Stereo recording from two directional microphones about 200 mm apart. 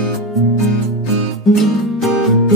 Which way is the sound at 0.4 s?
Centre (ahead or behind).